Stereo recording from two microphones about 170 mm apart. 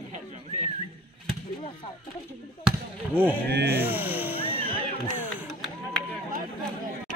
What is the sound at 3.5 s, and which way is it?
Speech, 75° right (ahead or behind).